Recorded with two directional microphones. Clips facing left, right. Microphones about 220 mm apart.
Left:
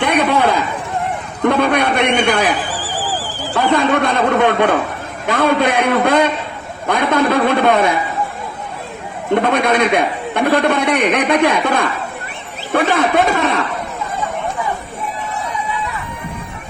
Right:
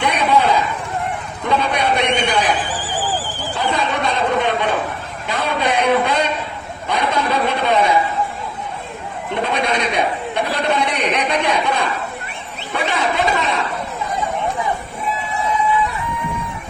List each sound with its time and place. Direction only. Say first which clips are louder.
0.0 s a sound: left 2 dB; 55° left (ahead or behind)
1.5 s a man's voice: left 4 dB; 55° left (ahead or behind)
3.5 s a man's voice: left 7 dB; 55° left (ahead or behind)
9.3 s a man's voice: left 6 dB; 55° left (ahead or behind)